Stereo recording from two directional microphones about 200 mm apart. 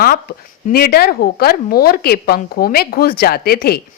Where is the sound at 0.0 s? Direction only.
50° left (ahead or behind).